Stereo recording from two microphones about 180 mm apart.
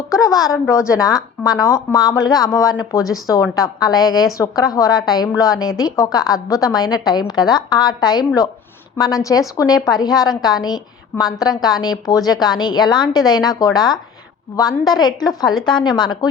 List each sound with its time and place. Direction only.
0.1 s speech: 20° left (ahead or behind)